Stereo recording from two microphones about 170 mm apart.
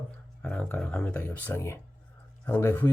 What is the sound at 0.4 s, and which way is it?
Speech, 10° left (ahead or behind).